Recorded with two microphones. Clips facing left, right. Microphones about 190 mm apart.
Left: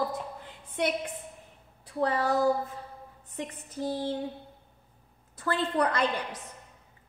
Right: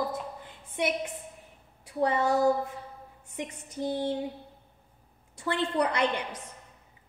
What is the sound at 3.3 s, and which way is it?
Speech, 20° right (ahead or behind).